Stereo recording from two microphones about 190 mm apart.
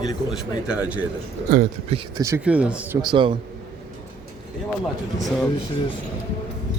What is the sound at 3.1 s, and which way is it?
Speech, 25° right (ahead or behind).